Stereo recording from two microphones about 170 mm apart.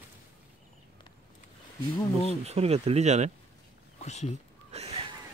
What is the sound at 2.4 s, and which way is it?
Speech, 40° right (ahead or behind).